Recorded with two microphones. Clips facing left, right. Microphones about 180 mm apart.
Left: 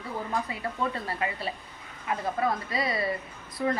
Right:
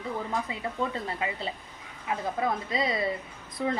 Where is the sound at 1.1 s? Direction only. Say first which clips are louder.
Left 1 dB; 20° right (ahead or behind).